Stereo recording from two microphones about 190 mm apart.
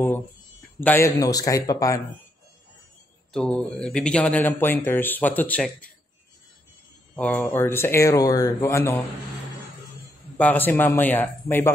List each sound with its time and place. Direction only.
0.7 s speech: 10° left (ahead or behind)
3.3 s speech: 5° left (ahead or behind)
7.2 s speech: 5° left (ahead or behind)
10.3 s speech: 10° left (ahead or behind)